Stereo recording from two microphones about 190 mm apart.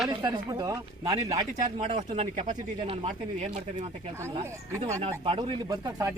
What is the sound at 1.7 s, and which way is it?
Speech, 35° right (ahead or behind).